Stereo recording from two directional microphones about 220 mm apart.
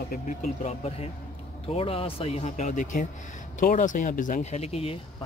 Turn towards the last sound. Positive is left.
turn(degrees=25)  # may be behind; listen again after turning